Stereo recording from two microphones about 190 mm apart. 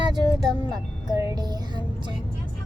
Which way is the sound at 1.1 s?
15° right (ahead or behind).